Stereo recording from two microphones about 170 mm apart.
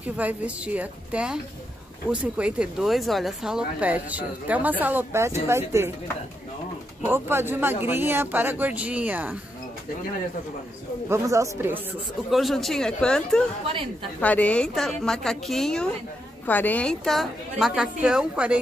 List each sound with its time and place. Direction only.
0.0 s speech: 10° right (ahead or behind)
7.1 s speech: 15° right (ahead or behind)
11.1 s speech: 20° right (ahead or behind)
12.3 s a woman's voice: centre (ahead or behind)